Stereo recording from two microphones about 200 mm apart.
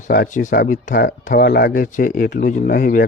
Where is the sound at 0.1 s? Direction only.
40° left (ahead or behind).